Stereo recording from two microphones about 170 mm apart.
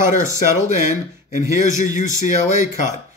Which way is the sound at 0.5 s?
45° left (ahead or behind).